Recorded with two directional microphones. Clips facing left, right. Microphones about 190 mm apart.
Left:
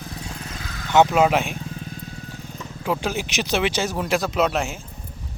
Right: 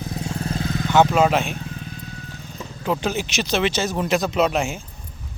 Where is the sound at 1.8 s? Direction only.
40° left (ahead or behind).